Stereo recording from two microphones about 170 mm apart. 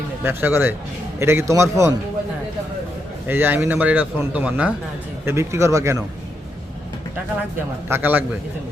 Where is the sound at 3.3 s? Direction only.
10° right (ahead or behind).